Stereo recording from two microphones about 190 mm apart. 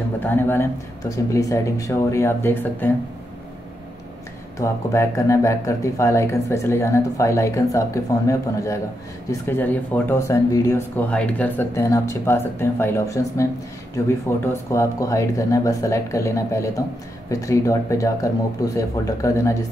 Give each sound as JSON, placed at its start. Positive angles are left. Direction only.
{"t": 0.2, "sound": "speech", "side_deg": 10}
{"t": 4.6, "sound": "speech", "side_deg": 15}